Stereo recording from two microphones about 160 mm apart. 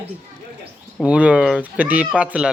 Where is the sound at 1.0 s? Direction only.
5° right (ahead or behind).